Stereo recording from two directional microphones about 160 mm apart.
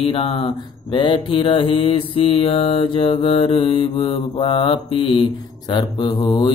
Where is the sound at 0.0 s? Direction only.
35° left (ahead or behind).